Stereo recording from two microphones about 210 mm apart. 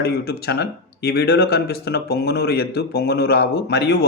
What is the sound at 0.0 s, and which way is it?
Speech, 50° left (ahead or behind).